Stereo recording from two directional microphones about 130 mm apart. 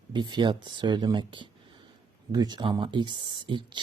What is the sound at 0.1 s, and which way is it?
Speech, 35° right (ahead or behind).